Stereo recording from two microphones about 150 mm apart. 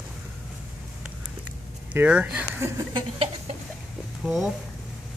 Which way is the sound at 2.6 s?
30° right (ahead or behind).